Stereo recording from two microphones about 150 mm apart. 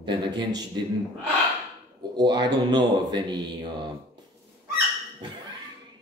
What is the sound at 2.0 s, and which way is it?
Speech, 30° right (ahead or behind).